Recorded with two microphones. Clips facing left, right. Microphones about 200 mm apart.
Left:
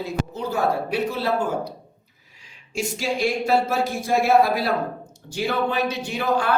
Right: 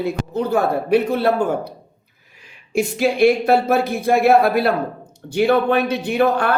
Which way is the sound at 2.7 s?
60° right (ahead or behind).